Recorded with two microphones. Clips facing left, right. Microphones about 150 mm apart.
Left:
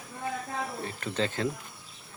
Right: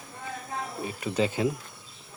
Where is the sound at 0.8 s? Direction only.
10° right (ahead or behind).